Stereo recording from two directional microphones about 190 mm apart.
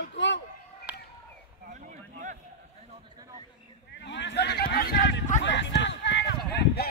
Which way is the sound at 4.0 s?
65° left (ahead or behind).